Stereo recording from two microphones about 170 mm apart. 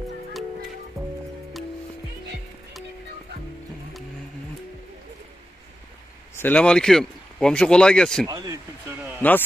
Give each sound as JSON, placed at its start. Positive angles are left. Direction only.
{"t": 6.3, "sound": "speech", "side_deg": 10}
{"t": 8.3, "sound": "a sound", "side_deg": -20}
{"t": 9.2, "sound": "a man's voice", "side_deg": 10}